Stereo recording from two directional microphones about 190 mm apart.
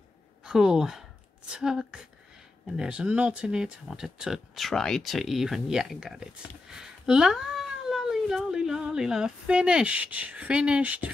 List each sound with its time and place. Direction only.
0.4 s speech: 5° right (ahead or behind)